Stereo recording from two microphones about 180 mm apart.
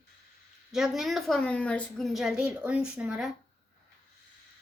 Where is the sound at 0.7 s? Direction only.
Centre (ahead or behind).